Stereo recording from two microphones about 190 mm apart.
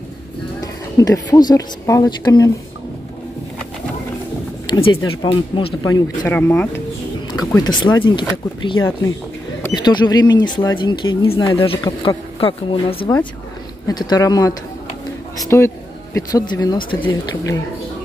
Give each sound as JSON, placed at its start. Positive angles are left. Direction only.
{"t": 0.9, "sound": "a woman's voice", "side_deg": 20}
{"t": 4.7, "sound": "a sound", "side_deg": 25}
{"t": 5.2, "sound": "a woman's voice", "side_deg": 30}
{"t": 5.9, "sound": "speech", "side_deg": 15}
{"t": 7.3, "sound": "a woman's voice", "side_deg": 20}